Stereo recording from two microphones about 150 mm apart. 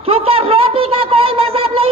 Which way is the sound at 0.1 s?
40° right (ahead or behind).